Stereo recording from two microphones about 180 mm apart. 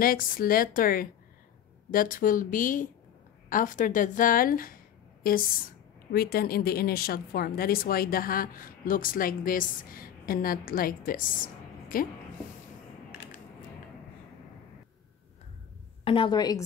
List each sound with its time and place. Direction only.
0.0 s a woman's voice: 50° left (ahead or behind)
16.0 s a woman's voice: 30° left (ahead or behind)